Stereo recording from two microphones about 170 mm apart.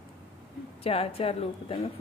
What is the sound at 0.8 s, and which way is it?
Speech, 35° left (ahead or behind).